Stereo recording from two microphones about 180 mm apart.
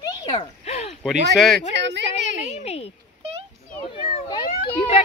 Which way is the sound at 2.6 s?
35° left (ahead or behind).